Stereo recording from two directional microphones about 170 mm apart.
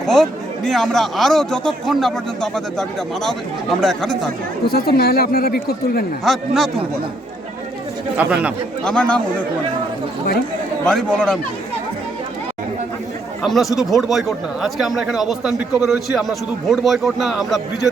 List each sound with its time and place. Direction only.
0.0 s speech: centre (ahead or behind)
4.6 s speech: 65° left (ahead or behind)
6.2 s speech: centre (ahead or behind)
8.1 s speech: 10° right (ahead or behind)
8.8 s speech: 5° left (ahead or behind)
10.8 s speech: 5° left (ahead or behind)
13.4 s speech: centre (ahead or behind)